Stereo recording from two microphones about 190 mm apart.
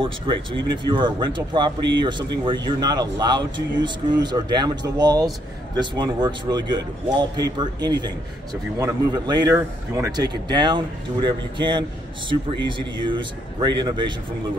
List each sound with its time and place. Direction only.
0.0 s a man's voice: 25° right (ahead or behind)